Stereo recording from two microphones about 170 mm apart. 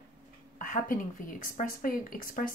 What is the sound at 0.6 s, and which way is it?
A woman's voice, 50° left (ahead or behind).